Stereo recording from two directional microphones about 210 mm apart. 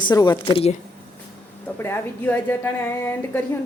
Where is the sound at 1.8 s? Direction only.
10° left (ahead or behind).